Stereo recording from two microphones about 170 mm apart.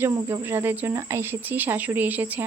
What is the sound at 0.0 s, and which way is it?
Speech, 15° right (ahead or behind).